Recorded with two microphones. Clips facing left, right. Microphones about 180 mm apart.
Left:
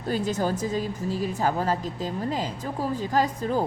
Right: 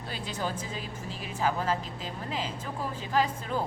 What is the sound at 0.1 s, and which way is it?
A woman's voice, 45° left (ahead or behind).